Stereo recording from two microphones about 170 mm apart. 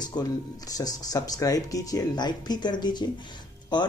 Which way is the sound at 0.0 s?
25° left (ahead or behind).